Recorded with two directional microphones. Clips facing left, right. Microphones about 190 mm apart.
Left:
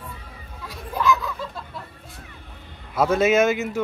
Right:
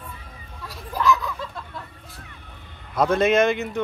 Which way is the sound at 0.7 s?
Centre (ahead or behind).